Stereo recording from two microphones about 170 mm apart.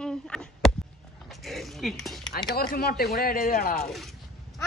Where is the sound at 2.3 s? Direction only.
65° left (ahead or behind).